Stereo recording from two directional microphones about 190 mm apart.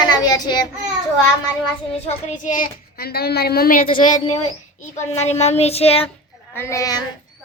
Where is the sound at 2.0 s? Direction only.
40° left (ahead or behind).